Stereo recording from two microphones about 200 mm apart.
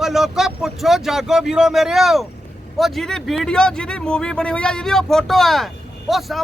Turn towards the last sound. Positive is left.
turn(degrees=0)  # may be behind; listen again after turning